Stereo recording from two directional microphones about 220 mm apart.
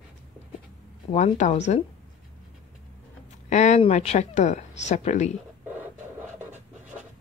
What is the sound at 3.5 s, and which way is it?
Speech, 30° left (ahead or behind).